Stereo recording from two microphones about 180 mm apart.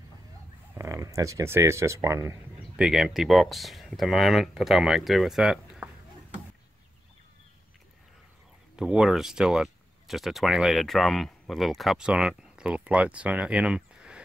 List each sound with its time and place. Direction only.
0.7 s speech: 15° right (ahead or behind)
2.8 s speech: centre (ahead or behind)
8.7 s speech: 5° right (ahead or behind)